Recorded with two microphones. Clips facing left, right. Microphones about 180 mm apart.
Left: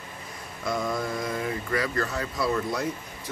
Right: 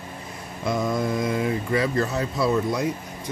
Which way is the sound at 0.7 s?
20° right (ahead or behind).